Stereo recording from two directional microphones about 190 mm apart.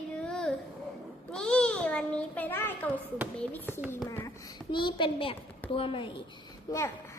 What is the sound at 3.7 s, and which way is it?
Speech, 10° right (ahead or behind).